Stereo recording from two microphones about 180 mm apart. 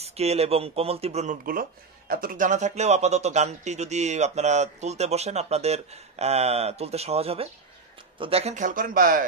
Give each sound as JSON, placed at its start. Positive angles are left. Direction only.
{"t": 0.0, "sound": "speech", "side_deg": -35}